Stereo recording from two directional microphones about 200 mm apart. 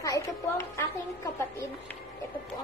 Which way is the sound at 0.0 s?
15° left (ahead or behind).